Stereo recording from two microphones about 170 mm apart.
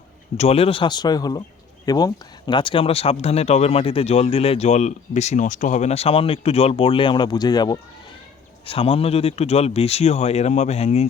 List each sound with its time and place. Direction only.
0.3 s a man's voice: 35° left (ahead or behind)